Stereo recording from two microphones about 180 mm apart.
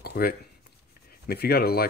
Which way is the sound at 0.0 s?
60° left (ahead or behind).